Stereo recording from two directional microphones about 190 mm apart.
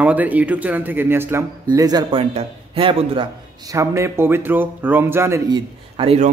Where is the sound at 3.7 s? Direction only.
15° right (ahead or behind).